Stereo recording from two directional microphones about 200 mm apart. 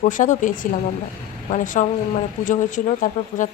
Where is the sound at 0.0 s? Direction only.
40° left (ahead or behind).